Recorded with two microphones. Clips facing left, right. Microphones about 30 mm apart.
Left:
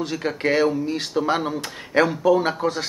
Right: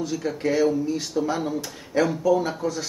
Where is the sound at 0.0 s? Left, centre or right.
Left.